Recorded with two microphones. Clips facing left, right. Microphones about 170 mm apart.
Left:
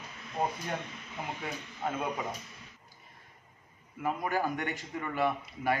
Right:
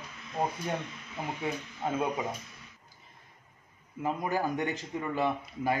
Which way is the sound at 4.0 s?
20° right (ahead or behind).